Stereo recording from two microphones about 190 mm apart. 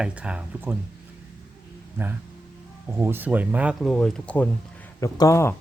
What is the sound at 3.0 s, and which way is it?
Speech, 10° right (ahead or behind).